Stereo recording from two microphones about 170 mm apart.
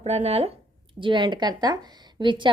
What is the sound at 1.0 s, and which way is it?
A woman's voice, 30° right (ahead or behind).